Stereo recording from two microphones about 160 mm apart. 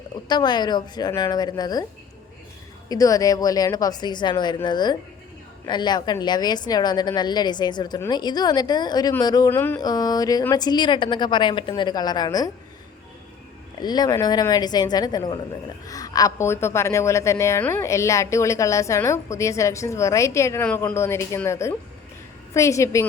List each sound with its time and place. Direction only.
0.3 s a woman's voice: 25° left (ahead or behind)
2.9 s a woman's voice: 20° left (ahead or behind)
9.5 s a woman's voice: 15° left (ahead or behind)
13.7 s a woman's voice: 25° left (ahead or behind)